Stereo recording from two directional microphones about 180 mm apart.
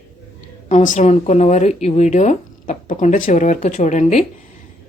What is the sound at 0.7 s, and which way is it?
Speech, 45° left (ahead or behind).